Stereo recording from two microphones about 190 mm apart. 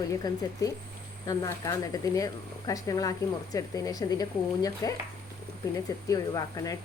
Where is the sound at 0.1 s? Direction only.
15° left (ahead or behind).